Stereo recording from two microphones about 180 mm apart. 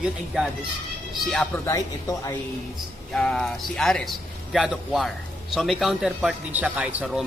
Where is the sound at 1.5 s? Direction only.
15° left (ahead or behind).